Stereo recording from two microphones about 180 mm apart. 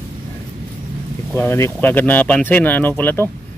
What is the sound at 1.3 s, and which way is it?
Speech, 15° left (ahead or behind).